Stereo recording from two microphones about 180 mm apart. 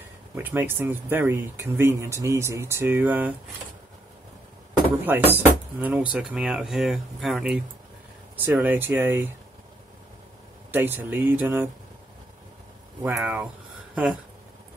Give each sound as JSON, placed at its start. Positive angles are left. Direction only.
{"t": 0.4, "sound": "speech", "side_deg": -10}
{"t": 5.0, "sound": "speech", "side_deg": -10}
{"t": 10.7, "sound": "speech", "side_deg": -10}
{"t": 13.0, "sound": "speech", "side_deg": -10}